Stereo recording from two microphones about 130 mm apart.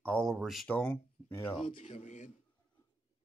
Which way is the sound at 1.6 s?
45° left (ahead or behind).